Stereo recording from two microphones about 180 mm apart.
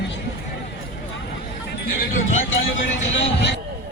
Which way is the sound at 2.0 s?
45° left (ahead or behind).